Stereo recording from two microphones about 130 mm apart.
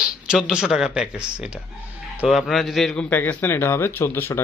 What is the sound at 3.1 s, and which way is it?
Speech, 15° left (ahead or behind).